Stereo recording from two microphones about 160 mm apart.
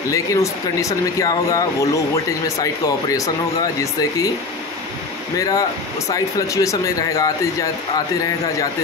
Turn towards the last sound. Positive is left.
turn(degrees=20)  # may be behind; listen again after turning